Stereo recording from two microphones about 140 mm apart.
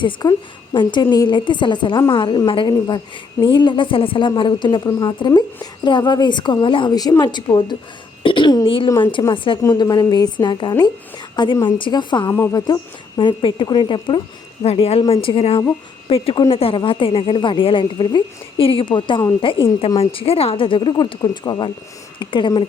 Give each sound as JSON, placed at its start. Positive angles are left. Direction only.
{"t": 0.0, "sound": "a woman's voice", "side_deg": 30}
{"t": 9.6, "sound": "a woman's voice", "side_deg": 25}
{"t": 12.3, "sound": "a woman's voice", "side_deg": 20}
{"t": 13.1, "sound": "a woman's voice", "side_deg": 35}
{"t": 14.6, "sound": "a woman's voice", "side_deg": 45}